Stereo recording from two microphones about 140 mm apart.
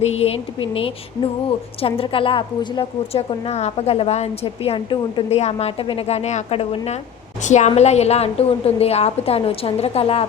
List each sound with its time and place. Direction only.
0.2 s a woman's voice: 40° left (ahead or behind)